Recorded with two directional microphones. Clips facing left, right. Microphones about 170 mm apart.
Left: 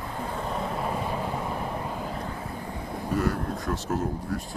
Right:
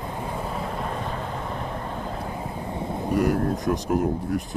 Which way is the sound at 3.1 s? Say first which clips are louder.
Right 5 dB; 20° right (ahead or behind).